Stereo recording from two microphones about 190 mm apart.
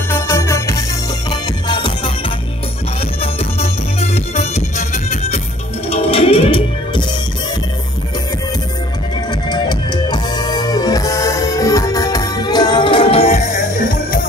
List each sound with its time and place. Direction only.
0.1 s music: 15° left (ahead or behind)
3.2 s music: 35° left (ahead or behind)
9.3 s music: 25° left (ahead or behind)